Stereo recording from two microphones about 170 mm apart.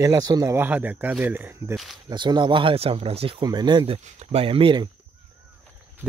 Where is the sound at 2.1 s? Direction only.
25° right (ahead or behind).